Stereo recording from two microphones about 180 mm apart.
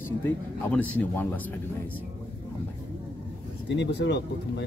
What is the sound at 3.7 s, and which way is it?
Speech, 75° left (ahead or behind).